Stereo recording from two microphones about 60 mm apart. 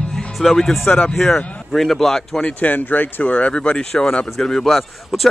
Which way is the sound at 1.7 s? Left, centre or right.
Centre.